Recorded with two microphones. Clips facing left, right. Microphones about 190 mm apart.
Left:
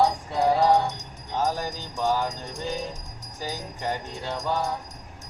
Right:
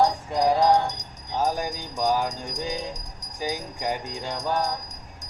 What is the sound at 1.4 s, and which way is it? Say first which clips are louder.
Jingle bell: right 1 dB; 10° right (ahead or behind).